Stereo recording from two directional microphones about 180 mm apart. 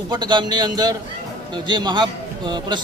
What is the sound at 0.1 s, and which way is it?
A man's voice, 25° right (ahead or behind).